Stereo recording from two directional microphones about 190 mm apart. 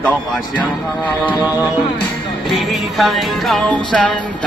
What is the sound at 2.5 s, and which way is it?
Music, centre (ahead or behind).